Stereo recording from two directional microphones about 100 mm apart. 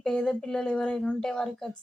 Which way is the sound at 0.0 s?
10° left (ahead or behind).